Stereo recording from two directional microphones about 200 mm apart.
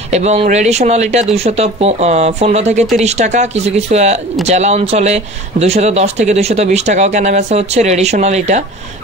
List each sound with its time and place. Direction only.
0.1 s speech: 35° right (ahead or behind)